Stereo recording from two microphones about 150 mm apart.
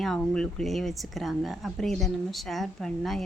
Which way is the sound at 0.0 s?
Centre (ahead or behind).